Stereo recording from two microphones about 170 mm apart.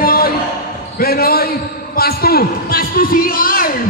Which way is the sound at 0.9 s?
60° left (ahead or behind).